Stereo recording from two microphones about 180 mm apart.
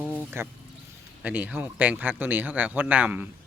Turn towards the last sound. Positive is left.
turn(degrees=-10)  # may be behind; listen again after turning